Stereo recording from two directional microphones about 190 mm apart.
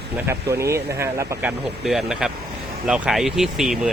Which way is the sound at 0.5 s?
15° right (ahead or behind).